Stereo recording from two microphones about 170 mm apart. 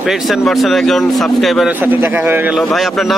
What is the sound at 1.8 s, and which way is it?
Speech, 10° right (ahead or behind).